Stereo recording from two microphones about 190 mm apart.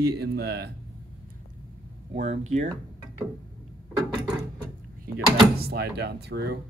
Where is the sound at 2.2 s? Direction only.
35° right (ahead or behind).